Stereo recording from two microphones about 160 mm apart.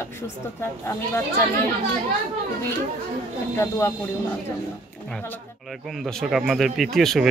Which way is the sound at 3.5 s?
15° left (ahead or behind).